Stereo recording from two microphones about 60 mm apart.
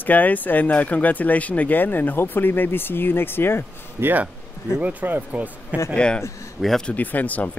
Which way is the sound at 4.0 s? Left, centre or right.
Right.